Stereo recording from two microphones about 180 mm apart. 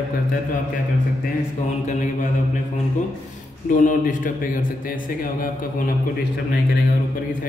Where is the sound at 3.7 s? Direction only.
45° left (ahead or behind).